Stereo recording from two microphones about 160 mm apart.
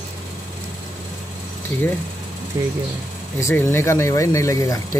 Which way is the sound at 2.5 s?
15° right (ahead or behind).